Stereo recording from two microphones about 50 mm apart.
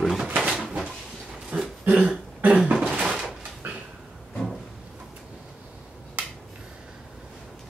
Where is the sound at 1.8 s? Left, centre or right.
Right.